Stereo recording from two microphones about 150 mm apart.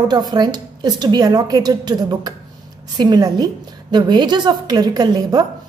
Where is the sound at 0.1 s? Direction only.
30° right (ahead or behind).